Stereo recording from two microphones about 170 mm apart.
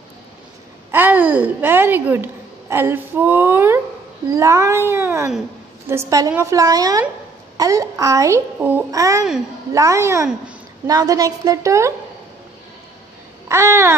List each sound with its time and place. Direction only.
0.9 s a woman's voice: 10° right (ahead or behind)
13.5 s speech: 15° right (ahead or behind)